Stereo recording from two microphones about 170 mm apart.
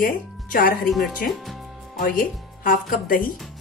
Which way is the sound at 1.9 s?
55° left (ahead or behind).